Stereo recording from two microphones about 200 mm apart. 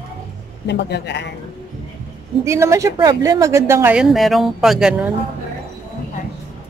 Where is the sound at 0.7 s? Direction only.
60° left (ahead or behind).